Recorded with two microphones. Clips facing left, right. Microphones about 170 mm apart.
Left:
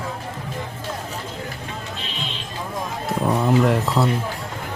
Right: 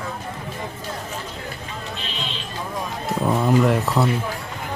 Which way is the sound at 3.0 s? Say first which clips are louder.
Even; centre (ahead or behind).